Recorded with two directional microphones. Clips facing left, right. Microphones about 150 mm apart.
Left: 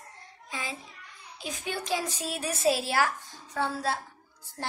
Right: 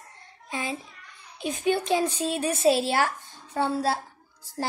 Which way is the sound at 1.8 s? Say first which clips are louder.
Right 7 dB; 30° right (ahead or behind).